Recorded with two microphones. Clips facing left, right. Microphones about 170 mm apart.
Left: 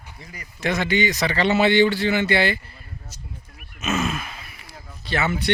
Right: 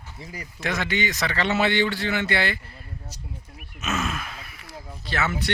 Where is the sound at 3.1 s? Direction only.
35° right (ahead or behind).